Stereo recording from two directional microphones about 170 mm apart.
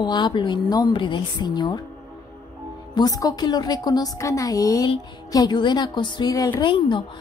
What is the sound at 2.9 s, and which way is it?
A woman's voice, 20° left (ahead or behind).